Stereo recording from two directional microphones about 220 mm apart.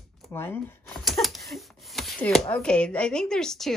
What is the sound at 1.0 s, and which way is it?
Speech, centre (ahead or behind).